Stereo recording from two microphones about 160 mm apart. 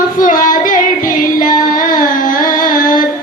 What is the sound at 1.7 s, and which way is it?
Carnatic music, 55° left (ahead or behind).